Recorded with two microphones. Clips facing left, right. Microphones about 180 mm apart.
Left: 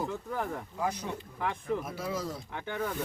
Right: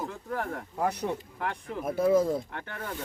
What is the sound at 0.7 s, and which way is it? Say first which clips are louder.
Speech: right 6 dB; 60° right (ahead or behind).